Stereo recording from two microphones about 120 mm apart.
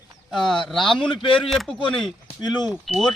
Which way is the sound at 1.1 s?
45° left (ahead or behind).